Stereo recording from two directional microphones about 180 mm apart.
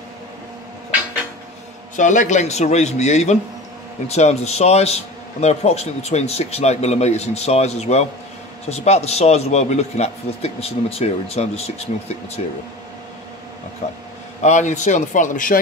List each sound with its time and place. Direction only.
2.0 s a man's voice: 45° left (ahead or behind)
14.4 s a man's voice: 40° left (ahead or behind)